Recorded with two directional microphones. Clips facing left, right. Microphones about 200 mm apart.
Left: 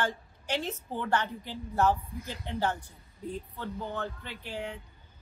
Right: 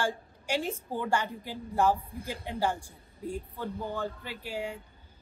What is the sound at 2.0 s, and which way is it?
Speech, 30° right (ahead or behind).